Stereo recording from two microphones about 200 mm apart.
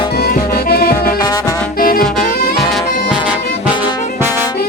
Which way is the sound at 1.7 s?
45° left (ahead or behind).